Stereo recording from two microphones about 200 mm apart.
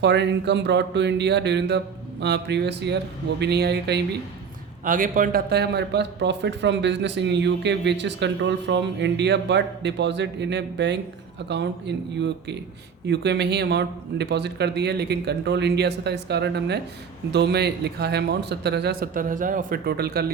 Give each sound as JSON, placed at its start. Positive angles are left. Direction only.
{"t": 0.0, "sound": "a man's voice", "side_deg": -60}
{"t": 4.9, "sound": "a man's voice", "side_deg": -40}